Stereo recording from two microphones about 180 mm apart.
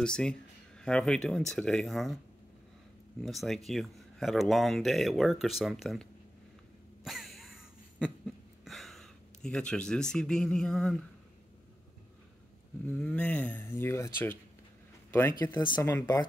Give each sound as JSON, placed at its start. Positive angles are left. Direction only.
{"t": 0.0, "sound": "speech", "side_deg": 5}
{"t": 3.2, "sound": "speech", "side_deg": 0}
{"t": 7.1, "sound": "a sound", "side_deg": 0}
{"t": 8.6, "sound": "speech", "side_deg": 0}
{"t": 12.8, "sound": "speech", "side_deg": 5}
{"t": 15.6, "sound": "speech", "side_deg": 25}